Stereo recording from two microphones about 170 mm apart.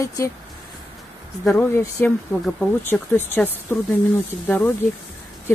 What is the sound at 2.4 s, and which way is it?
Speech, 5° left (ahead or behind).